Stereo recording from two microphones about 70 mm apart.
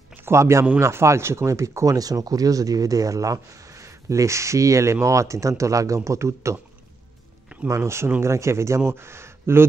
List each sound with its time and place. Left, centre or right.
0.1 s speech: right
7.6 s speech: right